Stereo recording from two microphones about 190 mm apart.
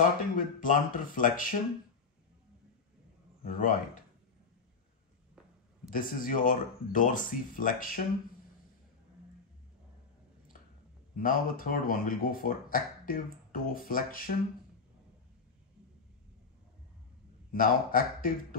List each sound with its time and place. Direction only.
0.4 s speech: 45° left (ahead or behind)
3.4 s speech: 45° left (ahead or behind)
5.9 s speech: 45° left (ahead or behind)
11.1 s speech: 45° left (ahead or behind)
17.5 s speech: 50° left (ahead or behind)